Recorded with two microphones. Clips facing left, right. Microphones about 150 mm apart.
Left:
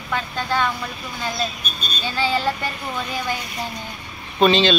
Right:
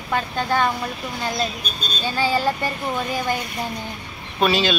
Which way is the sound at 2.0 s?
45° right (ahead or behind).